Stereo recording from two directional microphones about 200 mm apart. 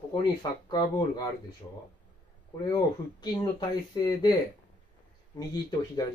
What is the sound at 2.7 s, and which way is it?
Speech, 20° left (ahead or behind).